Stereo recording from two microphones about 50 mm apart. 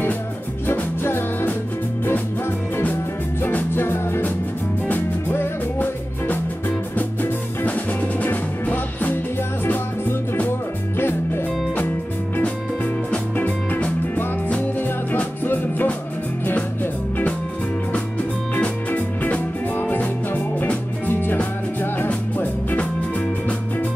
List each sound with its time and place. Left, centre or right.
0.7 s music: left
3.7 s music: left
4.8 s music: left
7.0 s music: left
11.0 s music: left
15.4 s music: left
18.6 s music: left
21.1 s music: left